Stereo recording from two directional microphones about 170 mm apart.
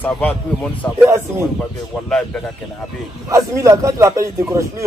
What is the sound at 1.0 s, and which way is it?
Speech, 15° right (ahead or behind).